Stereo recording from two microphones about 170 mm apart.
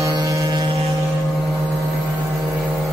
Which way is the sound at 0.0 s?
20° right (ahead or behind).